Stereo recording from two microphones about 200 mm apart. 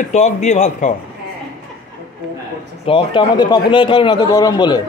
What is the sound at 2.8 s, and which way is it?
A man's voice, 25° left (ahead or behind).